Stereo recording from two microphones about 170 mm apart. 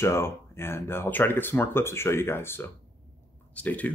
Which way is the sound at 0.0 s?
15° left (ahead or behind).